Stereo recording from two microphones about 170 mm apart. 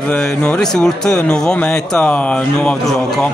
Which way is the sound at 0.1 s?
5° left (ahead or behind).